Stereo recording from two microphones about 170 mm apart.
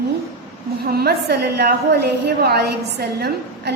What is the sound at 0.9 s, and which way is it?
A woman's voice, 65° right (ahead or behind).